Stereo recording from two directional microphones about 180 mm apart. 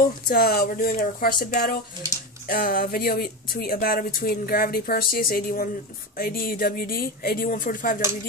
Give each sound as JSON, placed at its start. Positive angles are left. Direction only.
{"t": 0.0, "sound": "speech", "side_deg": 55}